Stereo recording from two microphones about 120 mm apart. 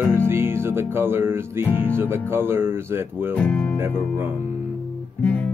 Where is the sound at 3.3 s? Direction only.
10° left (ahead or behind).